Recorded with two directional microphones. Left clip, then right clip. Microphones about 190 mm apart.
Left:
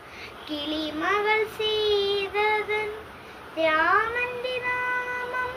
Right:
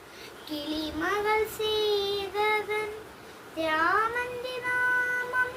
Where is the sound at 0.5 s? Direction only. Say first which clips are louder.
Left 3 dB; 30° right (ahead or behind).